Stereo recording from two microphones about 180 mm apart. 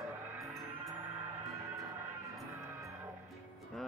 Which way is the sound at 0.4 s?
Centre (ahead or behind).